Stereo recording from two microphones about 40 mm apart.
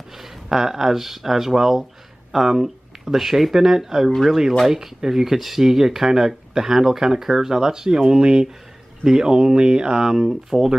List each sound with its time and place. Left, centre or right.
0.1 s speech: centre
4.1 s speech: centre
4.6 s speech: centre